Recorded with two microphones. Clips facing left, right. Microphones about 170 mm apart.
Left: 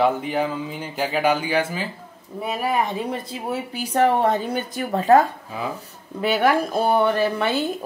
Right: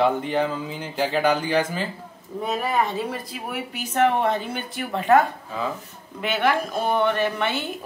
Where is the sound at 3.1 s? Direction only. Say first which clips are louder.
Left 4 dB; 25° left (ahead or behind).